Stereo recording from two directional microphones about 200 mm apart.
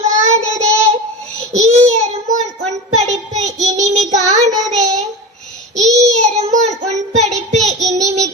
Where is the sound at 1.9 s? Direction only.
35° right (ahead or behind).